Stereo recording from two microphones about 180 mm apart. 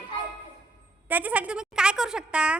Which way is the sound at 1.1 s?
10° right (ahead or behind).